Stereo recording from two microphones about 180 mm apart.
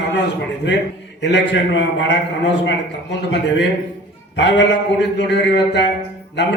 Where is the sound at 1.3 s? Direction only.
75° left (ahead or behind).